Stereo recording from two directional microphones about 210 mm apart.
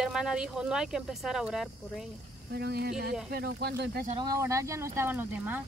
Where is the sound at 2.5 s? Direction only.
50° right (ahead or behind).